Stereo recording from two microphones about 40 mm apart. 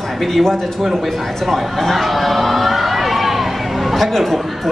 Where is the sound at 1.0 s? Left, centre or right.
Centre.